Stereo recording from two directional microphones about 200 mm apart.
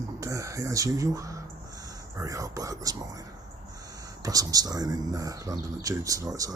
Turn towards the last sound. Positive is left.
turn(degrees=-15)  # may be behind; listen again after turning